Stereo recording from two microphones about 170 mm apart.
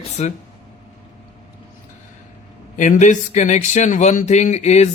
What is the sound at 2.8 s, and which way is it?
Speech, 45° left (ahead or behind).